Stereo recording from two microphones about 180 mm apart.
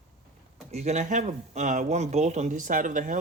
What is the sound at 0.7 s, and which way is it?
Speech, 40° right (ahead or behind).